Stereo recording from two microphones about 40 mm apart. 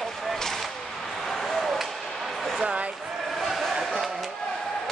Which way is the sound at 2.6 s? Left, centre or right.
Right.